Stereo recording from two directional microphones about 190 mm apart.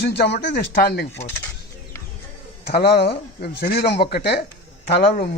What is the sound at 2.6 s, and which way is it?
A man's voice, 55° left (ahead or behind).